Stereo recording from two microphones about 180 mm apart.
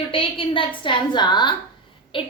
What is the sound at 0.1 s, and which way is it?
Child singing, 30° left (ahead or behind).